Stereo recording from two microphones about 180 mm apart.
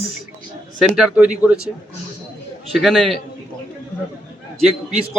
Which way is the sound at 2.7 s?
Centre (ahead or behind).